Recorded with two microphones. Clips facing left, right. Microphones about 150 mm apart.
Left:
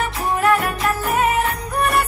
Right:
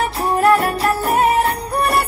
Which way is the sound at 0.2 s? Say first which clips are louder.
Right 4 dB; 35° right (ahead or behind).